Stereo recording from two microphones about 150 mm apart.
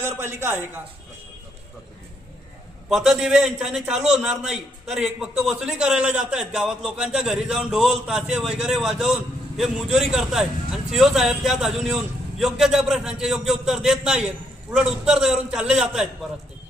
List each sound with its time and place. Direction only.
0.0 s speech: 15° right (ahead or behind)
2.9 s a man's voice: centre (ahead or behind)